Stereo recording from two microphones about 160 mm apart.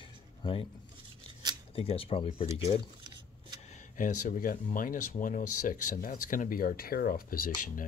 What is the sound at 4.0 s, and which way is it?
Speech, 55° left (ahead or behind).